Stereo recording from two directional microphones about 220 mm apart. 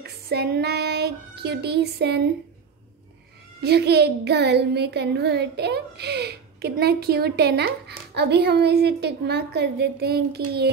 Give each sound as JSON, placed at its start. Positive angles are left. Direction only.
{"t": 0.0, "sound": "child singing", "side_deg": -45}
{"t": 3.6, "sound": "speech", "side_deg": -50}